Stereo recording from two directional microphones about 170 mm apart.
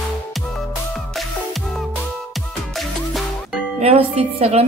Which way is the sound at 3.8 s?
35° right (ahead or behind).